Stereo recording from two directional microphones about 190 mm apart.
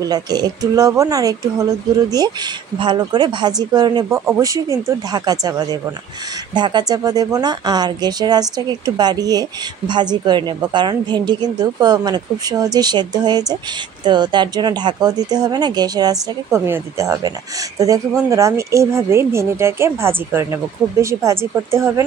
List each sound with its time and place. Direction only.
0.0 s a woman's voice: 20° right (ahead or behind)